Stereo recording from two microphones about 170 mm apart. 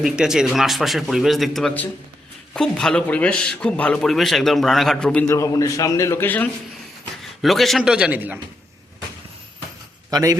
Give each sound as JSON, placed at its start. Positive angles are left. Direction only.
{"t": 0.0, "sound": "a man's voice", "side_deg": -5}
{"t": 5.3, "sound": "a man's voice", "side_deg": 20}
{"t": 10.1, "sound": "speech", "side_deg": -20}